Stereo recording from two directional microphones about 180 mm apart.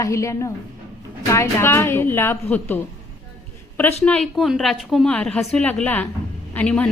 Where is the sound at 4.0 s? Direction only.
5° left (ahead or behind).